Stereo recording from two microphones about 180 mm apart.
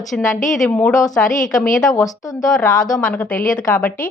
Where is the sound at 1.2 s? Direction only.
45° left (ahead or behind).